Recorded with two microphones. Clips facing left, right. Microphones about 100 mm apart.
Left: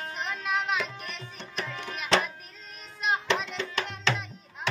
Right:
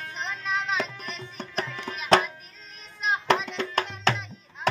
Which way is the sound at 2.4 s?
Centre (ahead or behind).